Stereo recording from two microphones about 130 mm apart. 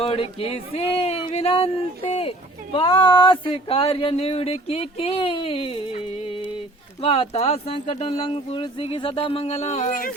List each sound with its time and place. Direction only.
0.0 s speech: 45° left (ahead or behind)
2.7 s speech: 40° left (ahead or behind)
7.0 s speech: 50° left (ahead or behind); by 10.1 s 85° left